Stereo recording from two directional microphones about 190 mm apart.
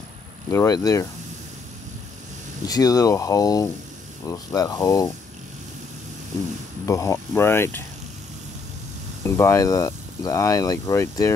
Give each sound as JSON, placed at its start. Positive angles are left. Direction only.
{"t": 0.5, "sound": "speech", "side_deg": 15}
{"t": 2.6, "sound": "speech", "side_deg": 20}
{"t": 6.9, "sound": "speech", "side_deg": 15}
{"t": 9.2, "sound": "speech", "side_deg": 15}